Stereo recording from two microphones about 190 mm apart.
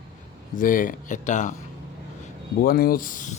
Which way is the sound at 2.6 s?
50° left (ahead or behind).